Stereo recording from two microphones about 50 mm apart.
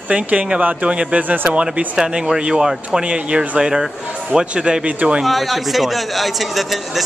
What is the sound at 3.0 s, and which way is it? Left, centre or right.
Speech, right.